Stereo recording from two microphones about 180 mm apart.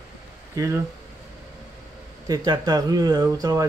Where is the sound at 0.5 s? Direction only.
15° right (ahead or behind).